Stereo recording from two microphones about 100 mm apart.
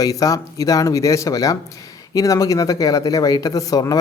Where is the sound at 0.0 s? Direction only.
35° left (ahead or behind).